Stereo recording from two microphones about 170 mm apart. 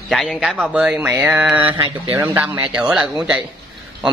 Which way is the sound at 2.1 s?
10° right (ahead or behind).